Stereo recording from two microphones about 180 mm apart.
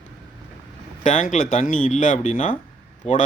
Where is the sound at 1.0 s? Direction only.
45° left (ahead or behind).